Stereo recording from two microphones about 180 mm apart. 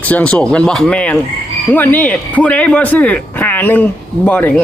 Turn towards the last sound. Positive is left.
turn(degrees=10)  # may be behind; listen again after turning